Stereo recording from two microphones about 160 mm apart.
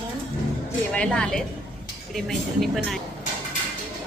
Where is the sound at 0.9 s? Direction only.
5° left (ahead or behind).